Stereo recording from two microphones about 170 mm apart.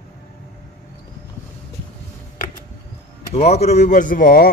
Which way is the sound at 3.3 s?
40° left (ahead or behind).